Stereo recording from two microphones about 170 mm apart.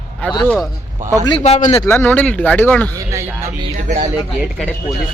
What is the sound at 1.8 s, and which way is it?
Speech, 15° left (ahead or behind).